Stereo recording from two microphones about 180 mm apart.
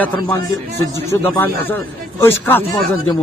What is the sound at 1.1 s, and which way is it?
Speech, 10° left (ahead or behind).